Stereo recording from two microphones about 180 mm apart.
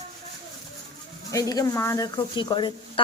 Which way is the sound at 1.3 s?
20° left (ahead or behind).